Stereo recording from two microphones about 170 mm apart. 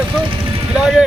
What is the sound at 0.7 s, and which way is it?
Speech, 5° right (ahead or behind).